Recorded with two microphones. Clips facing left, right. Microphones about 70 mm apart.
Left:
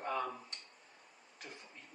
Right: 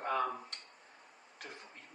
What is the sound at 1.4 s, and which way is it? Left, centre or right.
Speech, right.